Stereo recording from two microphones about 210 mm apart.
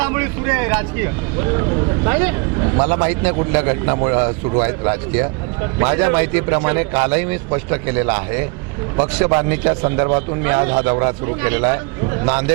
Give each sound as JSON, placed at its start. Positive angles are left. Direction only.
{"t": 0.0, "sound": "a man's voice", "side_deg": -15}